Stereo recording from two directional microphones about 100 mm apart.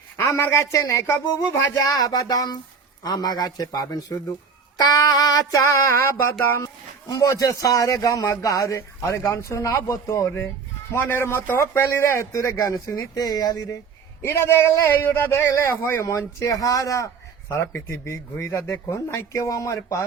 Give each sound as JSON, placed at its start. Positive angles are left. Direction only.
{"t": 0.2, "sound": "a man's voice", "side_deg": 30}
{"t": 7.1, "sound": "a man's voice", "side_deg": 35}
{"t": 14.2, "sound": "a man's voice", "side_deg": 25}